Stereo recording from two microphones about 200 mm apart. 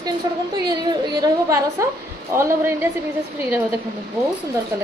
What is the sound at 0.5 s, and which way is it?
A woman's voice, 20° right (ahead or behind).